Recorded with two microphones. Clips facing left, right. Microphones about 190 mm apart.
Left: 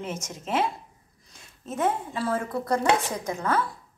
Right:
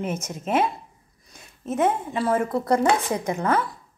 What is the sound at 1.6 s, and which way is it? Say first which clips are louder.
Speech: right 4 dB; 20° right (ahead or behind).